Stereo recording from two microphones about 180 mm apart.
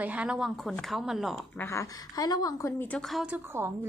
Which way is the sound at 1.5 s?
15° left (ahead or behind).